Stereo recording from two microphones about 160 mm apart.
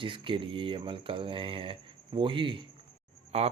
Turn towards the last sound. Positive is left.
turn(degrees=-40)  # may be behind; listen again after turning